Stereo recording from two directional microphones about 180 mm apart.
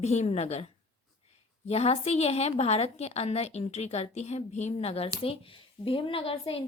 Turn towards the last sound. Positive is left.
turn(degrees=30)  # may be behind; listen again after turning